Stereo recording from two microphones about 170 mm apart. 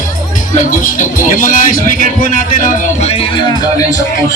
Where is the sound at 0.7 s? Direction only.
50° left (ahead or behind).